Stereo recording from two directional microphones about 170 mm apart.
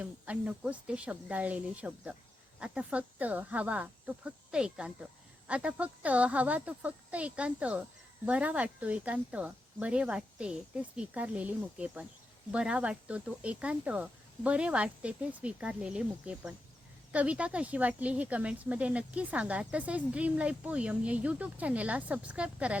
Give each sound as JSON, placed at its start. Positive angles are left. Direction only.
{"t": 0.0, "sound": "speech", "side_deg": -10}